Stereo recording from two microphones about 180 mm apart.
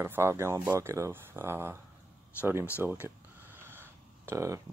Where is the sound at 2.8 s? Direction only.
10° right (ahead or behind).